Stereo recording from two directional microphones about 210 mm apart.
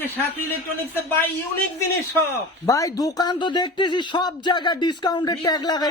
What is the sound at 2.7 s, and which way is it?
Speech, 15° left (ahead or behind).